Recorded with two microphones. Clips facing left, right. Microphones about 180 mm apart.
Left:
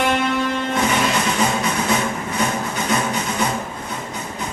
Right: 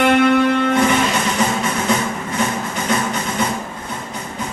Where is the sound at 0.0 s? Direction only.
60° right (ahead or behind).